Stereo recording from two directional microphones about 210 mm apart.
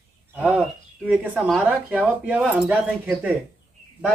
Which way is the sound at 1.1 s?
5° right (ahead or behind).